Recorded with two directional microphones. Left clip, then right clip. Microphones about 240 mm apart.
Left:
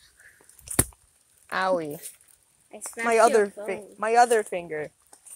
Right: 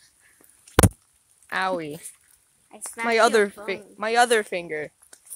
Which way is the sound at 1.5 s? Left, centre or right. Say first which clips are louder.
Left 1 dB; centre.